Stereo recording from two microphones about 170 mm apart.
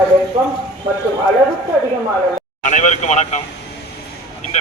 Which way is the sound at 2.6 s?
45° left (ahead or behind).